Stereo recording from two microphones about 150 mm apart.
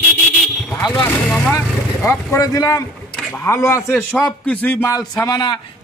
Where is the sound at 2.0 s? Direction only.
20° left (ahead or behind).